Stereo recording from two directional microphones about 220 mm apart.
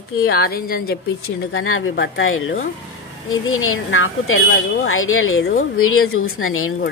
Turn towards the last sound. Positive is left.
turn(degrees=70)  # may be behind; listen again after turning